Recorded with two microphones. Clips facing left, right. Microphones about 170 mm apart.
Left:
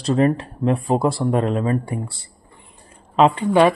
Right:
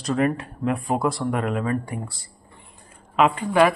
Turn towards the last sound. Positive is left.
turn(degrees=25)  # may be behind; listen again after turning